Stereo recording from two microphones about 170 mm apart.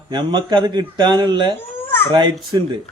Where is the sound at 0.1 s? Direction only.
25° right (ahead or behind).